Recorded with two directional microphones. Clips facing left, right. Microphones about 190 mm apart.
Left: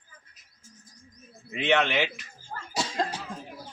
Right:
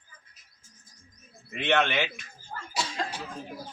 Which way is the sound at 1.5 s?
Centre (ahead or behind).